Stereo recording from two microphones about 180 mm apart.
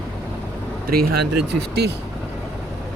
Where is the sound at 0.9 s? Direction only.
55° right (ahead or behind).